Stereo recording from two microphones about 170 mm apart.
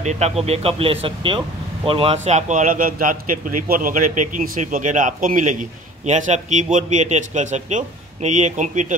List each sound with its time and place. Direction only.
0.0 s speech: 40° right (ahead or behind)
2.2 s a man's voice: 45° right (ahead or behind)